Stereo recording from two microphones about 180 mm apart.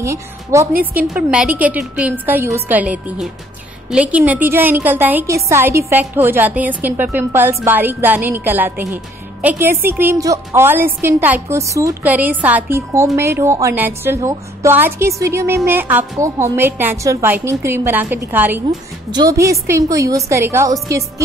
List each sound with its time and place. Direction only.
0.0 s a woman's voice: 15° right (ahead or behind)
0.9 s a woman's voice: 5° right (ahead or behind)